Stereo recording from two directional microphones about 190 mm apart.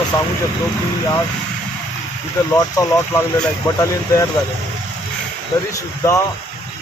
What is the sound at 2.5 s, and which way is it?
Speech, 15° left (ahead or behind).